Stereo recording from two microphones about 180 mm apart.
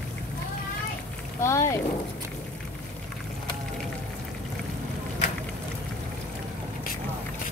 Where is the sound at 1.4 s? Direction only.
15° left (ahead or behind).